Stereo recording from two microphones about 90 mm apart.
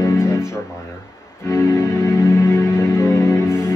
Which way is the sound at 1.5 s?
30° left (ahead or behind).